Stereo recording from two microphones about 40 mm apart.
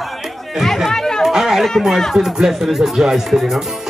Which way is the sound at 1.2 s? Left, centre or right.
Centre.